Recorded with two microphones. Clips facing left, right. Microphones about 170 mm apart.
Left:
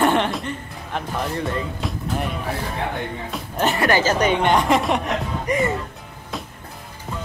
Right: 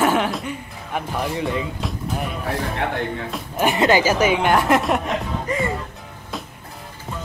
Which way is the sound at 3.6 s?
15° right (ahead or behind).